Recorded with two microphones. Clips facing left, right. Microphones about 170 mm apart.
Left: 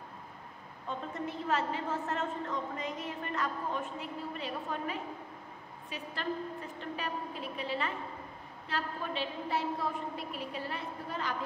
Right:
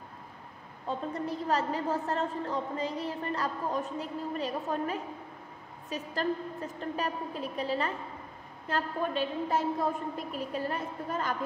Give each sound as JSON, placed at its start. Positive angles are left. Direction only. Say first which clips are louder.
{"t": 0.8, "sound": "a woman's voice", "louder": "right 4 dB", "side_deg": -35}